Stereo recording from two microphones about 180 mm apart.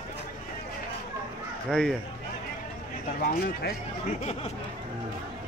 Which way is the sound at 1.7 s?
5° left (ahead or behind).